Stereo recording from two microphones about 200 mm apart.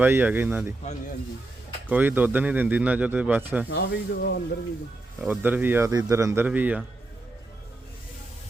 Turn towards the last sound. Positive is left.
turn(degrees=-5)  # may be behind; listen again after turning